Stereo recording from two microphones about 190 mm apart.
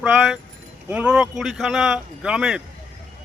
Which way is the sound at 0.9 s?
5° right (ahead or behind).